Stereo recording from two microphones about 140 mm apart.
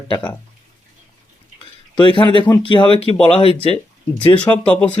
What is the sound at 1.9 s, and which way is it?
Speech, 35° left (ahead or behind).